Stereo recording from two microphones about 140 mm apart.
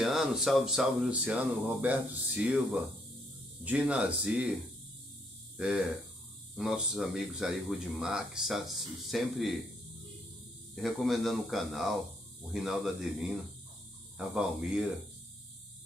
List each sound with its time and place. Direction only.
0.0 s speech: 5° right (ahead or behind)
6.5 s speech: 5° right (ahead or behind)
10.7 s speech: centre (ahead or behind)